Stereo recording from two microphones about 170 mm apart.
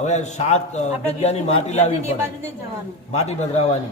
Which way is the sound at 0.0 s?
45° left (ahead or behind).